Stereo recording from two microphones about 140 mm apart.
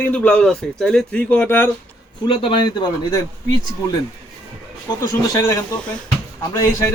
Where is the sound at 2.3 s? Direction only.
35° left (ahead or behind).